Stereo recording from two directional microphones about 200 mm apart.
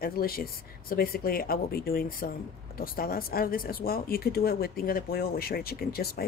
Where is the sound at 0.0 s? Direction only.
50° left (ahead or behind).